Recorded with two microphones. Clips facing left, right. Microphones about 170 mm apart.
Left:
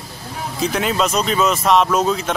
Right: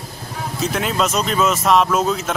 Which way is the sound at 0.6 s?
Centre (ahead or behind).